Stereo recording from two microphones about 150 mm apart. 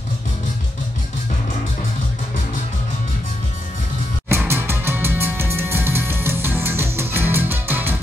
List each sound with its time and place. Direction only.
4.3 s music: 15° right (ahead or behind)